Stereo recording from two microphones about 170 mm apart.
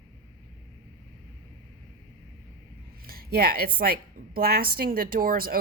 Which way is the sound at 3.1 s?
60° right (ahead or behind).